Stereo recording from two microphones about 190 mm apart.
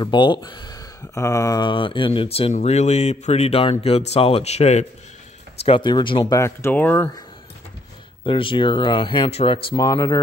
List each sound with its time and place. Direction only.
0.0 s speech: 25° left (ahead or behind)
8.2 s speech: 25° left (ahead or behind)